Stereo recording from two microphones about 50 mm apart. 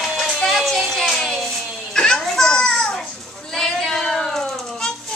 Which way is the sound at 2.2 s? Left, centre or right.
Centre.